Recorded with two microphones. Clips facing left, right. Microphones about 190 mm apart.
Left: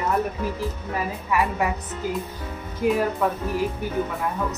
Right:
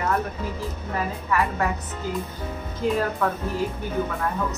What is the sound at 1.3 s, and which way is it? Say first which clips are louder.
Speech: left 1 dB; 15° left (ahead or behind).